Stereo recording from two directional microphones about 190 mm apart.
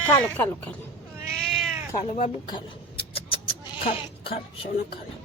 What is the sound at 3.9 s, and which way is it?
Speech, 30° left (ahead or behind).